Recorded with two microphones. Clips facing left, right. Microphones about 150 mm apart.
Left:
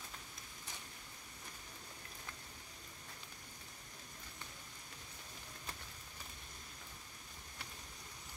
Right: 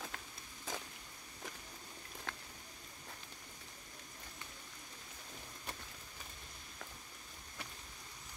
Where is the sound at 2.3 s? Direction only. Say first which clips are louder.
Right 8 dB; 90° right.